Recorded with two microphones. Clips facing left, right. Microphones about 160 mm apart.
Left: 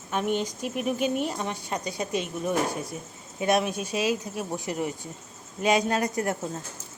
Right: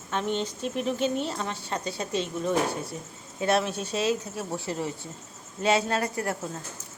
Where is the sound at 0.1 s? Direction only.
10° left (ahead or behind).